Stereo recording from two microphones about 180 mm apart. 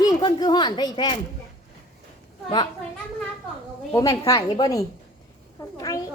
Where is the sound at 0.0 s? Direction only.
25° left (ahead or behind).